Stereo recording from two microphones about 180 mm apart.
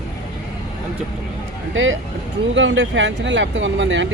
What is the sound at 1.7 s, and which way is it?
Speech, 90° right.